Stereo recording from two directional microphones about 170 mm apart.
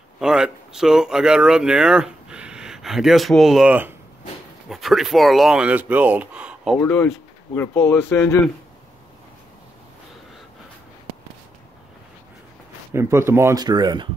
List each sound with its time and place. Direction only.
0.2 s speech: 5° right (ahead or behind)
6.8 s speech: 10° left (ahead or behind)
12.9 s speech: 15° right (ahead or behind)